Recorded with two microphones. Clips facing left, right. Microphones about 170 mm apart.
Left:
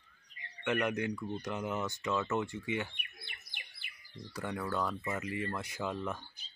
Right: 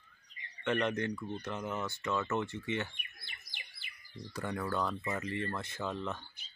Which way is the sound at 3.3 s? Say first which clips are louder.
Even; 55° left (ahead or behind).